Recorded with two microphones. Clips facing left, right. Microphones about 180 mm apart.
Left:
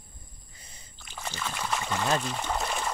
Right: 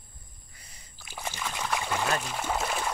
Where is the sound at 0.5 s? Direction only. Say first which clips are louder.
Left 1 dB; 25° left (ahead or behind).